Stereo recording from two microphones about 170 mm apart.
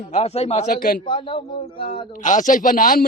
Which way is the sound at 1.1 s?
30° left (ahead or behind).